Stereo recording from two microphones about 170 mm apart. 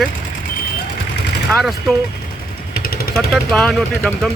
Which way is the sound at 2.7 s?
65° left (ahead or behind).